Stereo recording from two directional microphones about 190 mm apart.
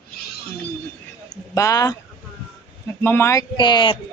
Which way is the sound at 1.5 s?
15° left (ahead or behind).